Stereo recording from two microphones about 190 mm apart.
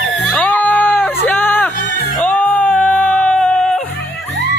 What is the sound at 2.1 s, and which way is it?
Music, 10° left (ahead or behind).